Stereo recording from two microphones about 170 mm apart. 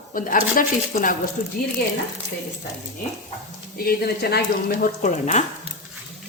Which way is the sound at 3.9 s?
65° left (ahead or behind).